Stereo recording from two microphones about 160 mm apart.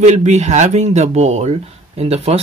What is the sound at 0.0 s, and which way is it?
Speech, 45° right (ahead or behind).